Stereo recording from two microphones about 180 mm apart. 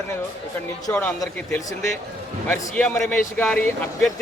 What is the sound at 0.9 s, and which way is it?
Speech, 15° left (ahead or behind).